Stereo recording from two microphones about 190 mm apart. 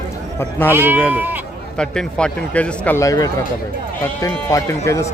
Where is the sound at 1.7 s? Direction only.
5° left (ahead or behind).